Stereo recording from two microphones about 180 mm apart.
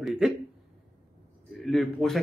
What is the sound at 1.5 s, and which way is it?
Speech, centre (ahead or behind).